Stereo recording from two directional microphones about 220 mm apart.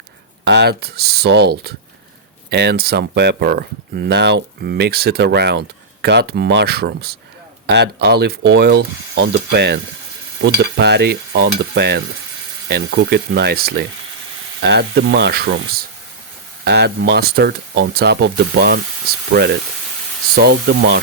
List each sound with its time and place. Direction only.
0.4 s speech: 50° right (ahead or behind)